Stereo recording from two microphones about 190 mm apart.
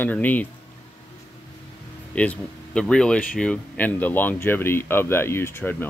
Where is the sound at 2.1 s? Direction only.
5° left (ahead or behind).